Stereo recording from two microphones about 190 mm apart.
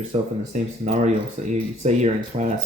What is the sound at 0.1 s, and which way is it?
Speech, 35° right (ahead or behind).